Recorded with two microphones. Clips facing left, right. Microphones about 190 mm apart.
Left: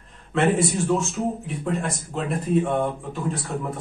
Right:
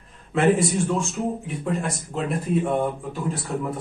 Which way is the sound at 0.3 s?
Centre (ahead or behind).